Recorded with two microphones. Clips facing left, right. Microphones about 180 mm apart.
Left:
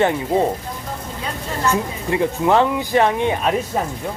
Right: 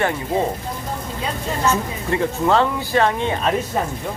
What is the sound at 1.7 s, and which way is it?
Speech, 15° left (ahead or behind).